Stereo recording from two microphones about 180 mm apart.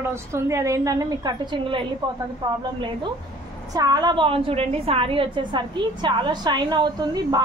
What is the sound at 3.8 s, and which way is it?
A woman's voice, 20° right (ahead or behind).